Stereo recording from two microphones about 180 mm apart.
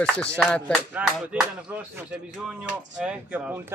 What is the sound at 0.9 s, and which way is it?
Speech, 5° right (ahead or behind).